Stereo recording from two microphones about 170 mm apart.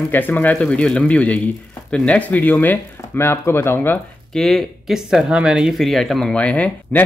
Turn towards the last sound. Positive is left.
turn(degrees=10)  # may be behind; listen again after turning